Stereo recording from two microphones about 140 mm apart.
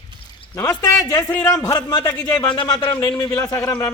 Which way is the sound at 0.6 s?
25° left (ahead or behind).